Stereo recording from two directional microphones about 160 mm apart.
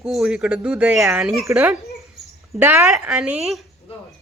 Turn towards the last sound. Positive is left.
turn(degrees=0)  # may be behind; listen again after turning